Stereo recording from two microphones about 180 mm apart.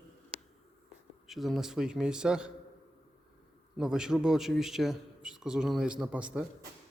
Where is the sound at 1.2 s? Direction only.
Centre (ahead or behind).